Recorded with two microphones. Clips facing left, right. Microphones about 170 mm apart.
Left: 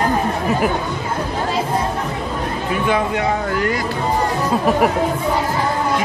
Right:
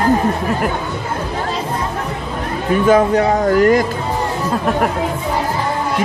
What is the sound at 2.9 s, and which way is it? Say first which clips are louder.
Speech: right 7 dB; 40° right (ahead or behind).